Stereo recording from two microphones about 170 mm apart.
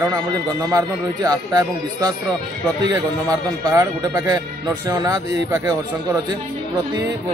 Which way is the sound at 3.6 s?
20° right (ahead or behind).